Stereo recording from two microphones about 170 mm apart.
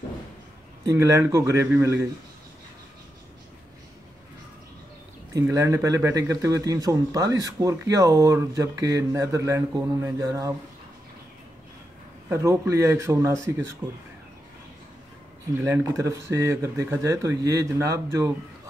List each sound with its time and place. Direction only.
0.8 s speech: 20° right (ahead or behind)
5.3 s speech: 20° right (ahead or behind)
12.3 s speech: 15° right (ahead or behind)
15.5 s speech: 15° right (ahead or behind)